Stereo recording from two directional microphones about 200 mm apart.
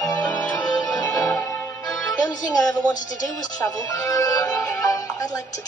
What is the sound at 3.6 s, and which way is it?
Speech, 15° left (ahead or behind).